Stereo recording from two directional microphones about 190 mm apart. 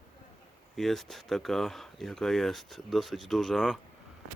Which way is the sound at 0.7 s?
Centre (ahead or behind).